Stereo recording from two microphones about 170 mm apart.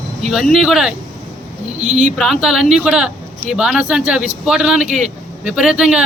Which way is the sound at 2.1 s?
Centre (ahead or behind).